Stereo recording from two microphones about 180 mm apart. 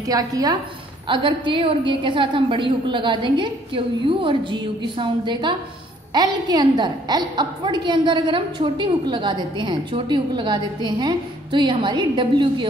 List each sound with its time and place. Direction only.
0.0 s a woman's voice: 20° right (ahead or behind)